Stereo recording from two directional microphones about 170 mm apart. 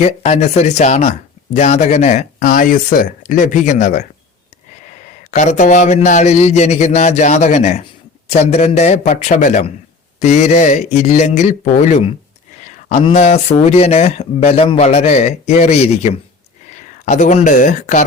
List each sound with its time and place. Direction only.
0.0 s speech: 40° left (ahead or behind)
12.5 s a sound: 40° left (ahead or behind)
13.1 s speech: 40° left (ahead or behind)